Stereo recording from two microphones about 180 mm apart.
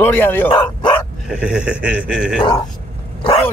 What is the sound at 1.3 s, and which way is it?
Speech, 5° right (ahead or behind).